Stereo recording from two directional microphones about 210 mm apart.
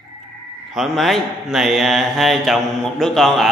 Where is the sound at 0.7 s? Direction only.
Centre (ahead or behind).